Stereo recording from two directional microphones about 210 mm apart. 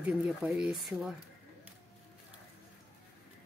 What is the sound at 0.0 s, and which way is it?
Speech, 5° right (ahead or behind).